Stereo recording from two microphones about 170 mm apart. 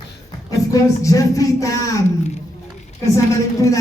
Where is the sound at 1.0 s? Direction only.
20° left (ahead or behind).